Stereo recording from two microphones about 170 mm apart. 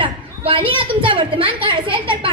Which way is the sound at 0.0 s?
30° right (ahead or behind).